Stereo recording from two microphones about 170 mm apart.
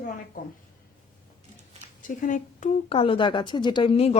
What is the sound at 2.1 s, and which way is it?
Speech, 50° left (ahead or behind).